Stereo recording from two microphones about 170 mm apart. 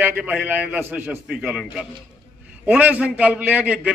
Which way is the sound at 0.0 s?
10° right (ahead or behind).